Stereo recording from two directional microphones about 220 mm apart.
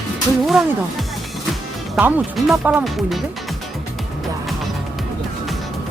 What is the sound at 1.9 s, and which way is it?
Speech, 5° right (ahead or behind).